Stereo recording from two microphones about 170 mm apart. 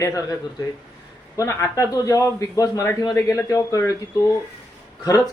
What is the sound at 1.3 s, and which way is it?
Speech, 15° left (ahead or behind).